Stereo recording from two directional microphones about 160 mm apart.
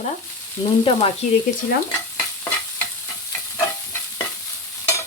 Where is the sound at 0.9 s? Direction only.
35° left (ahead or behind).